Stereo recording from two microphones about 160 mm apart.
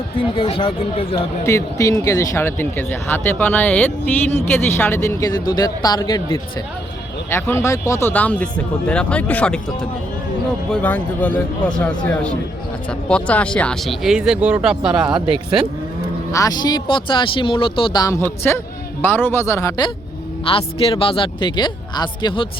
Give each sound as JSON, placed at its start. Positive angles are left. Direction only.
{"t": 0.2, "sound": "speech", "side_deg": 35}
{"t": 1.5, "sound": "speech", "side_deg": 20}
{"t": 7.3, "sound": "speech", "side_deg": 15}
{"t": 16.3, "sound": "speech", "side_deg": 20}
{"t": 18.2, "sound": "speech", "side_deg": 15}
{"t": 20.5, "sound": "speech", "side_deg": 35}